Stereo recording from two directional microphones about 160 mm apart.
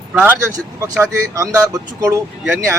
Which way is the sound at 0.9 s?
20° right (ahead or behind).